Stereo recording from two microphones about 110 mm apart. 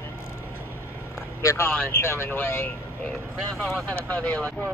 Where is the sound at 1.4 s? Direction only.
25° left (ahead or behind).